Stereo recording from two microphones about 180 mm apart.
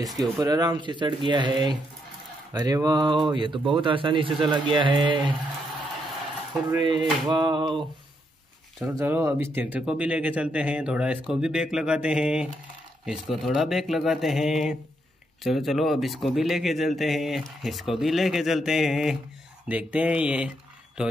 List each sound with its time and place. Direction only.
0.0 s speech: 20° right (ahead or behind)
6.8 s speech: 25° right (ahead or behind)
8.7 s speech: 15° right (ahead or behind)